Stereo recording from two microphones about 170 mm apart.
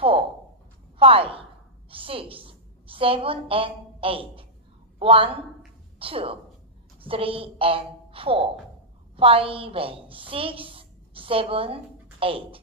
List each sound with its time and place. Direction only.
0.9 s a woman's voice: 35° right (ahead or behind)